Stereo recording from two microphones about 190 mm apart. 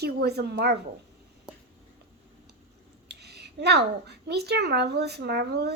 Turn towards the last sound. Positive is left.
turn(degrees=-60)  # may be behind; listen again after turning